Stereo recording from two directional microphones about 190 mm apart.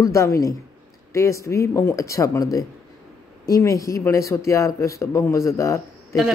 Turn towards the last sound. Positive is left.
turn(degrees=15)  # may be behind; listen again after turning